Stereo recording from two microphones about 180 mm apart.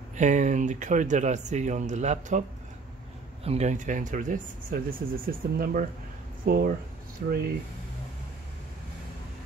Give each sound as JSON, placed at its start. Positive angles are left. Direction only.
{"t": 0.1, "sound": "speech", "side_deg": -40}
{"t": 3.4, "sound": "speech", "side_deg": -40}